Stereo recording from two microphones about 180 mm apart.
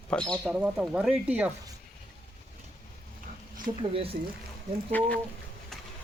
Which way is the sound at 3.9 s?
30° right (ahead or behind).